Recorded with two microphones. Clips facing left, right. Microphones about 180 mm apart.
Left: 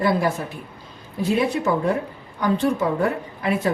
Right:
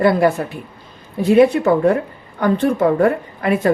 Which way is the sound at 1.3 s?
60° right (ahead or behind).